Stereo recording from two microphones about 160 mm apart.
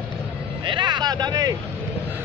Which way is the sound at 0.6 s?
30° right (ahead or behind).